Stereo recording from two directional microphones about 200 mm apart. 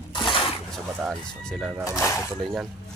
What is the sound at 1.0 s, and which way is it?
Speech, centre (ahead or behind).